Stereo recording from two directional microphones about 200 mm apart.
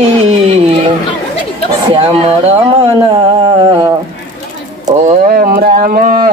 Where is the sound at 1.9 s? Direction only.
30° right (ahead or behind).